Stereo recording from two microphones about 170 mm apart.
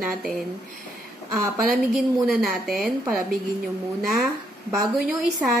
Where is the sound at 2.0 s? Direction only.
Centre (ahead or behind).